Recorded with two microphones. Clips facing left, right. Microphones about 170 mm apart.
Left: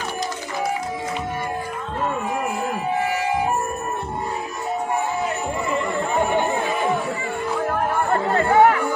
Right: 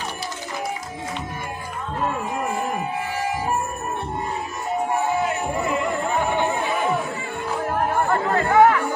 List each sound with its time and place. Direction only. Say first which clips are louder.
8.1 s chatter: left 2 dB; 30° left (ahead or behind)